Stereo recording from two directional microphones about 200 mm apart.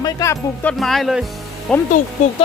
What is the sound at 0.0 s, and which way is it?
Speech, 15° left (ahead or behind).